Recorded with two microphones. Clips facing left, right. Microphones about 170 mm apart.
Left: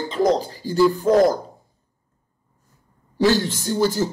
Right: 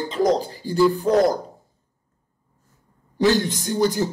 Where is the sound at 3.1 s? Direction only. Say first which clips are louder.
Even; 20° right (ahead or behind).